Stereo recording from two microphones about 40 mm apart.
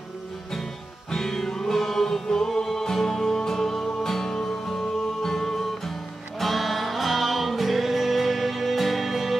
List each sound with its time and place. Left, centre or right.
1.1 s music: centre